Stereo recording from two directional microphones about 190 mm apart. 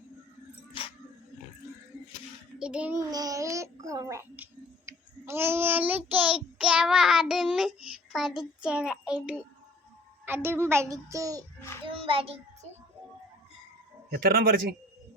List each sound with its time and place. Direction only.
2.6 s a child's voice: 5° right (ahead or behind)
3.1 s child singing: 20° right (ahead or behind); by 7.7 s centre (ahead or behind)
8.1 s a child's voice: centre (ahead or behind)
10.2 s child singing: 10° right (ahead or behind)
11.9 s a child's voice: 30° right (ahead or behind)
12.6 s music: 35° right (ahead or behind)
14.2 s speech: 50° right (ahead or behind)